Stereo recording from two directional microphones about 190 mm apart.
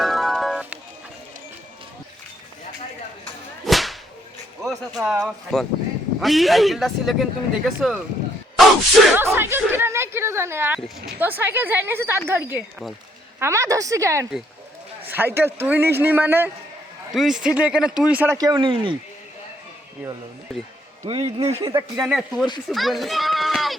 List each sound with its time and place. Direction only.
0.0 s music: centre (ahead or behind)
3.7 s whip: centre (ahead or behind)
4.6 s speech: centre (ahead or behind)
9.1 s speech: 10° right (ahead or behind)
18.3 s speech: 20° right (ahead or behind)
21.1 s speech: 30° right (ahead or behind)
21.6 s speech: 20° right (ahead or behind)
22.0 s a child's voice: centre (ahead or behind)